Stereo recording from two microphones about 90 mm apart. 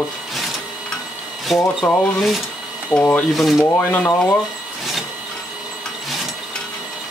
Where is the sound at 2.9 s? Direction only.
15° left (ahead or behind).